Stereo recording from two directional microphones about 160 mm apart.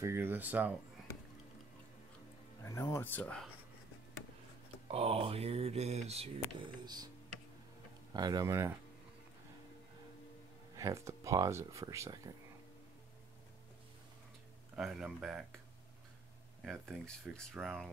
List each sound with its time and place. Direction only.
0.0 s speech: 15° right (ahead or behind)
2.6 s speech: 15° left (ahead or behind)
4.8 s speech: 40° right (ahead or behind)
8.1 s speech: 25° right (ahead or behind)
10.8 s speech: 20° right (ahead or behind)
14.8 s speech: centre (ahead or behind)
16.6 s speech: centre (ahead or behind)